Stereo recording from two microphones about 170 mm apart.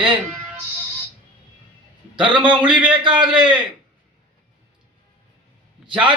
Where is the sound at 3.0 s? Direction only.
25° right (ahead or behind).